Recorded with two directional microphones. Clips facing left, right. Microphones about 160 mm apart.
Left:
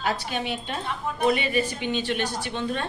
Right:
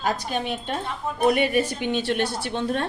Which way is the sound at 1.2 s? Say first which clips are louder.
Right 3 dB; 55° right (ahead or behind).